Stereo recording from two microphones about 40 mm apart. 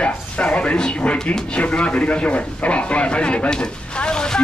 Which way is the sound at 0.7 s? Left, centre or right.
Left.